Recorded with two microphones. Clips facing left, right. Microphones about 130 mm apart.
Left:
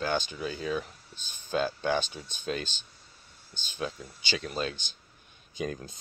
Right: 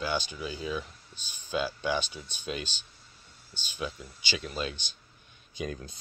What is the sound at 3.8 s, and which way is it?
Speech, 35° left (ahead or behind).